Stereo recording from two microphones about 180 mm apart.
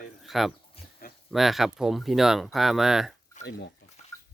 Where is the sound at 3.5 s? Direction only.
65° left (ahead or behind).